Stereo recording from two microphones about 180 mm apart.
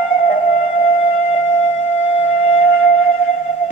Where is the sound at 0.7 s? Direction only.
35° left (ahead or behind).